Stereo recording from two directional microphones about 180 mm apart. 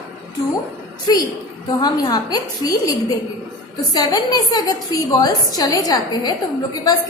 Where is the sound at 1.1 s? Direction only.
20° left (ahead or behind).